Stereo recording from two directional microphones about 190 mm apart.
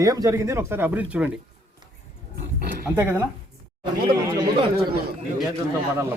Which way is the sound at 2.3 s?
55° right (ahead or behind).